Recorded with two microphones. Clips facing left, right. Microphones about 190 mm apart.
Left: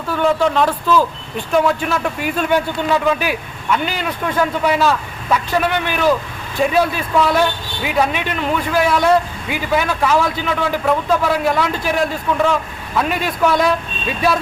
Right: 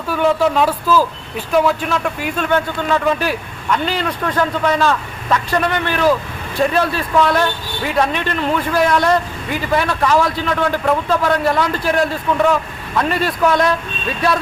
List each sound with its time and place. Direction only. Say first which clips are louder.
0.1 s a man's voice: right 1 dB; 5° right (ahead or behind)